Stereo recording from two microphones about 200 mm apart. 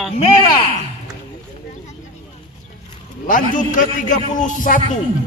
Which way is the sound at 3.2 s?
40° left (ahead or behind).